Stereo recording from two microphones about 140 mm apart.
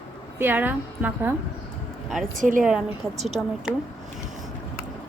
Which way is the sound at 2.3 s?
70° right (ahead or behind).